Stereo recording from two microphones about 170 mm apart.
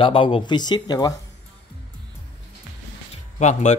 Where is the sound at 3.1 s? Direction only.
45° left (ahead or behind).